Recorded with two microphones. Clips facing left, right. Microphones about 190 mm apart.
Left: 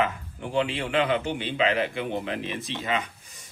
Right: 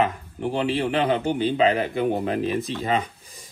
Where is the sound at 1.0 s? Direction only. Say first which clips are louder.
Right 1 dB; 40° right (ahead or behind).